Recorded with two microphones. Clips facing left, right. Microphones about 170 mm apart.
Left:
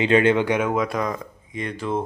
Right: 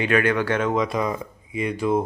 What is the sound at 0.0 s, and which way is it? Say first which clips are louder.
Speech: left 3 dB; 25° left (ahead or behind).